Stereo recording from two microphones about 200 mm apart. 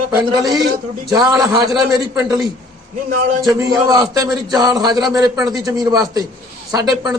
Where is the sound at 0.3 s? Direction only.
20° right (ahead or behind).